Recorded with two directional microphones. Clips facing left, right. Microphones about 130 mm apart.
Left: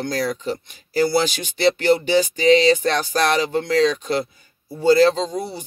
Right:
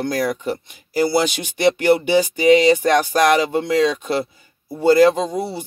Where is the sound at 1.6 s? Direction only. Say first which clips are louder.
Right 2 dB; 15° right (ahead or behind).